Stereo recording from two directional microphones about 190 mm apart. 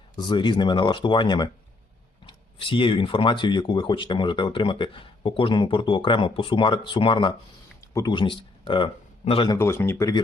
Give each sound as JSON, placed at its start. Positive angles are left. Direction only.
{"t": 0.3, "sound": "speech", "side_deg": 25}
{"t": 9.6, "sound": "speech", "side_deg": 15}